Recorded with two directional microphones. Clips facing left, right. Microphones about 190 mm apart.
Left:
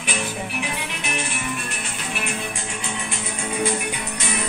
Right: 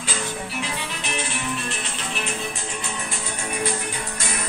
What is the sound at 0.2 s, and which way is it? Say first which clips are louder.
Music: left 2 dB; 15° left (ahead or behind).